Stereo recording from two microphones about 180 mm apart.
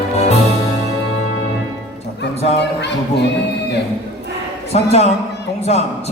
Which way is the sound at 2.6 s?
70° left (ahead or behind).